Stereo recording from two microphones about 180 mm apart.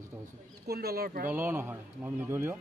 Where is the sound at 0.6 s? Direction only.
60° right (ahead or behind).